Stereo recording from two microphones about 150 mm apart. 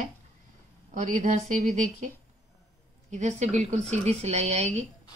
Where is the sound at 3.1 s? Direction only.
50° right (ahead or behind).